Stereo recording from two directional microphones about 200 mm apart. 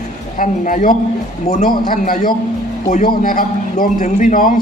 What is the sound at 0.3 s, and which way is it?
A man's voice, 40° left (ahead or behind).